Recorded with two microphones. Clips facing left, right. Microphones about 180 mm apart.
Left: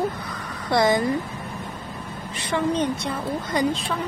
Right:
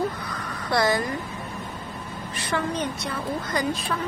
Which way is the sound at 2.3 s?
20° left (ahead or behind).